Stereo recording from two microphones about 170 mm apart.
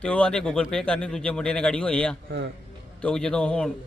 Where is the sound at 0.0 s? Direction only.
5° left (ahead or behind).